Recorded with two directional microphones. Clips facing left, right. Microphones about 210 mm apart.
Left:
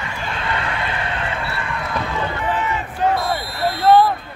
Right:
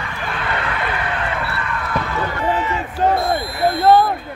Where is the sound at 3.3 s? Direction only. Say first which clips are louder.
Right 4 dB; 45° right (ahead or behind).